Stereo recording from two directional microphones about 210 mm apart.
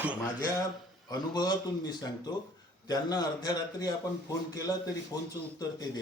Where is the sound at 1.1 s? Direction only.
20° left (ahead or behind).